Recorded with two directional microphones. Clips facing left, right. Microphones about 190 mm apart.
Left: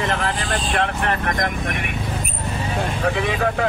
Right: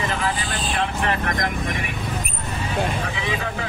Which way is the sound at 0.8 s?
50° left (ahead or behind).